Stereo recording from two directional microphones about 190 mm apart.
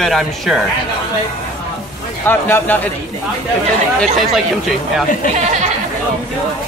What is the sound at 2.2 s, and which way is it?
Speech, 10° left (ahead or behind).